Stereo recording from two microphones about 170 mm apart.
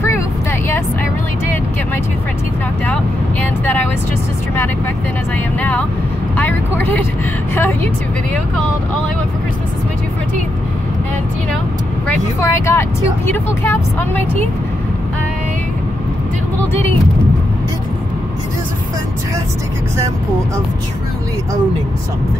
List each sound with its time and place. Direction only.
0.0 s vehicle: 15° left (ahead or behind)
2.8 s speech: 10° left (ahead or behind)
5.6 s speech: 10° left (ahead or behind)
12.4 s speech: 15° left (ahead or behind)